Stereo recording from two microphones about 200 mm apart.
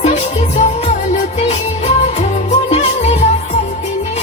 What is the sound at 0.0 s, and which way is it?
Music, 35° left (ahead or behind).